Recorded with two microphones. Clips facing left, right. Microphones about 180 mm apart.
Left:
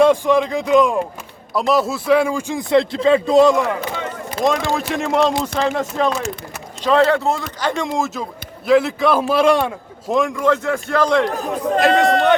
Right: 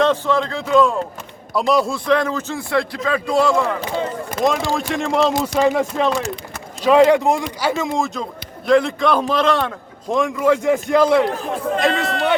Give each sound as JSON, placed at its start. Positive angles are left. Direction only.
{"t": 0.0, "sound": "speech", "side_deg": 15}
{"t": 1.5, "sound": "speech", "side_deg": 0}
{"t": 3.8, "sound": "speech", "side_deg": -30}
{"t": 4.4, "sound": "a man's voice", "side_deg": 0}
{"t": 5.5, "sound": "a man's voice", "side_deg": -10}
{"t": 10.5, "sound": "speech", "side_deg": -15}
{"t": 11.3, "sound": "a man's voice", "side_deg": 40}